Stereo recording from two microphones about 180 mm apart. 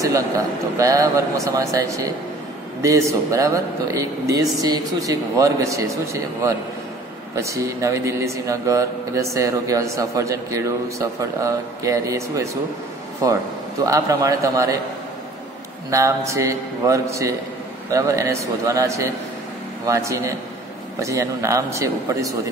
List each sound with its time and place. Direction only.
0.7 s a man's voice: 20° right (ahead or behind)
15.9 s speech: 15° right (ahead or behind)